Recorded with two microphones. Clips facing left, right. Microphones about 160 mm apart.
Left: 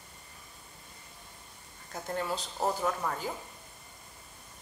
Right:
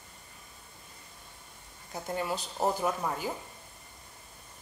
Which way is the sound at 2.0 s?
10° right (ahead or behind).